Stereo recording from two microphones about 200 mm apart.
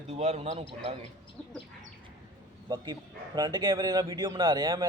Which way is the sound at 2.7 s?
20° right (ahead or behind).